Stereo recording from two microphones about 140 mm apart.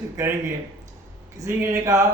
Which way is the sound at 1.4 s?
20° right (ahead or behind).